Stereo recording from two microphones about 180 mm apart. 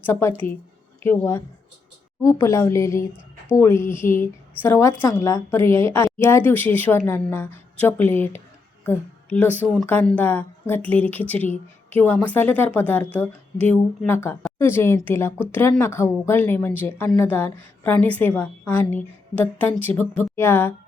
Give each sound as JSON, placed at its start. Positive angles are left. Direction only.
{"t": 0.0, "sound": "a woman's voice", "side_deg": 15}